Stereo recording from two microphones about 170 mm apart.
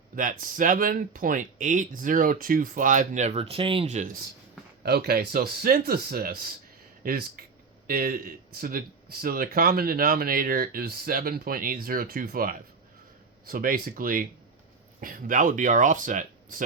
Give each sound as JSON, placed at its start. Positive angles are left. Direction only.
{"t": 0.2, "sound": "speech", "side_deg": -55}
{"t": 4.8, "sound": "speech", "side_deg": -65}